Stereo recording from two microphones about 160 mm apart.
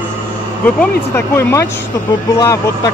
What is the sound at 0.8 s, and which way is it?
Speech, 15° left (ahead or behind).